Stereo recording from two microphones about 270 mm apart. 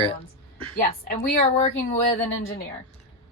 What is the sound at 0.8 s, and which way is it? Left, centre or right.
Speech, left.